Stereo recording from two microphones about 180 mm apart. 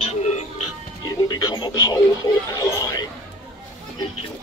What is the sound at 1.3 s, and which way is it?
Radio, 25° left (ahead or behind).